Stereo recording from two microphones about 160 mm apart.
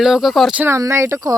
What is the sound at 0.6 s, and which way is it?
Speech, 15° right (ahead or behind).